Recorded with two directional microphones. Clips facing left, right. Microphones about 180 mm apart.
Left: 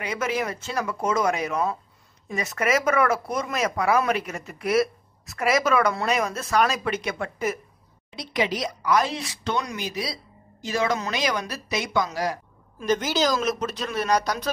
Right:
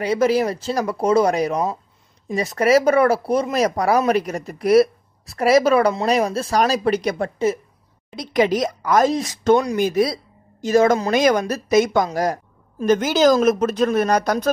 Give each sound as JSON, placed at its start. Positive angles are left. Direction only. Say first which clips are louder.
{"t": 0.0, "sound": "a woman's voice", "louder": "right 9 dB", "side_deg": -35}
{"t": 8.2, "sound": "a woman's voice", "louder": "right 8 dB", "side_deg": -45}